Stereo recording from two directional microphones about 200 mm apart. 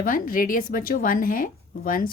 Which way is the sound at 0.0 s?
45° left (ahead or behind).